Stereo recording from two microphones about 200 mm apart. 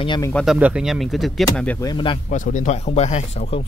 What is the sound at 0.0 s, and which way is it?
Speech, 20° left (ahead or behind).